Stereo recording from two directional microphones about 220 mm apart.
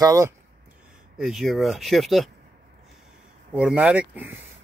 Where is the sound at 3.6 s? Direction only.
5° right (ahead or behind).